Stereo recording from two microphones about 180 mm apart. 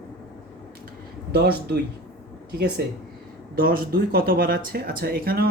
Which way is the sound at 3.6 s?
55° right (ahead or behind).